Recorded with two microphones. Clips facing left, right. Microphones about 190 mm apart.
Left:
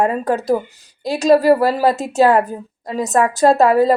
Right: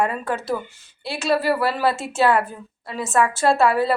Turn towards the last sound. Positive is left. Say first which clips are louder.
# left 6 dB
turn(degrees=40)  # may be behind; listen again after turning